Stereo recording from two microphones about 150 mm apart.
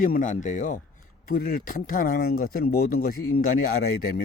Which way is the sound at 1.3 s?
75° left (ahead or behind).